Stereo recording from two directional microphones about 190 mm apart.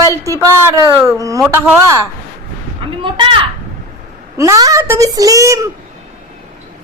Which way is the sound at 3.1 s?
25° right (ahead or behind).